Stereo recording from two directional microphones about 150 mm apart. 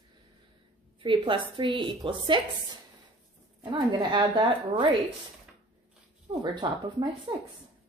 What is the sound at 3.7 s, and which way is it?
A woman's voice, 30° right (ahead or behind).